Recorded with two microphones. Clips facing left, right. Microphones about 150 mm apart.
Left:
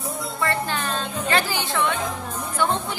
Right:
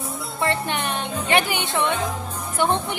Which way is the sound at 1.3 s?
20° right (ahead or behind).